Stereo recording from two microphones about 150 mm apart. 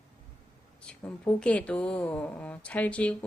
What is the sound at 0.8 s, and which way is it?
Speech, 10° left (ahead or behind).